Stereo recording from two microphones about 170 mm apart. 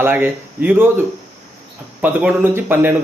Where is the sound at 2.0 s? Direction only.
10° right (ahead or behind).